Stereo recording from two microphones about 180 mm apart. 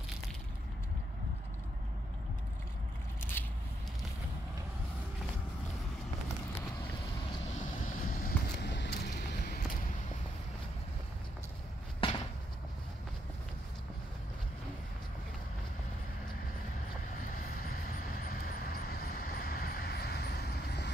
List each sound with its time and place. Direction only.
3.2 s scissors: 10° left (ahead or behind)
7.8 s vehicle: 50° left (ahead or behind)
8.6 s vehicle: 70° left (ahead or behind)
12.0 s a sound: 30° left (ahead or behind)
17.6 s vehicle: 50° left (ahead or behind)